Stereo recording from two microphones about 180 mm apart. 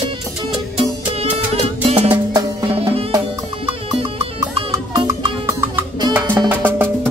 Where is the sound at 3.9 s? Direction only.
30° right (ahead or behind).